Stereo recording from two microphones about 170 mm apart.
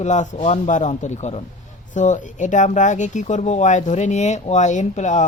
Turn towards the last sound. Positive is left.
turn(degrees=45)  # may be behind; listen again after turning